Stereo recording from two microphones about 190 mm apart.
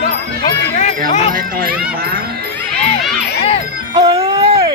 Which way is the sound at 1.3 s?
50° right (ahead or behind).